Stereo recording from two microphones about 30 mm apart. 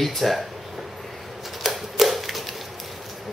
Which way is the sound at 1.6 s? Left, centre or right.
Centre.